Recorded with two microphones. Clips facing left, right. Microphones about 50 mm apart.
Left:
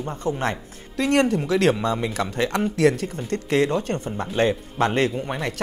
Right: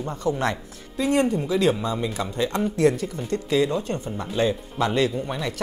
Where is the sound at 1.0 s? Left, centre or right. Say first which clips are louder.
Left 2 dB; left.